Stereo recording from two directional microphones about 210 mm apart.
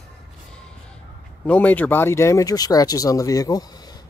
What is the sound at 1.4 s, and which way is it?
Speech, 10° left (ahead or behind).